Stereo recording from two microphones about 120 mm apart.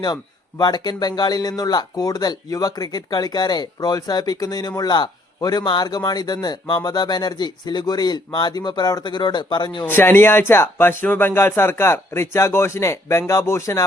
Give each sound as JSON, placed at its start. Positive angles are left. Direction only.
{"t": 0.6, "sound": "speech", "side_deg": 35}
{"t": 9.8, "sound": "speech", "side_deg": 15}